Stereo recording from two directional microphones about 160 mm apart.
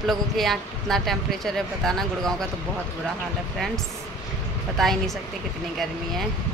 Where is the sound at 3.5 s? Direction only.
Centre (ahead or behind).